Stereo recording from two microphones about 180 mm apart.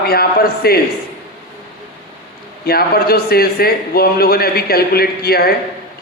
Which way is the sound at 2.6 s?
60° left (ahead or behind).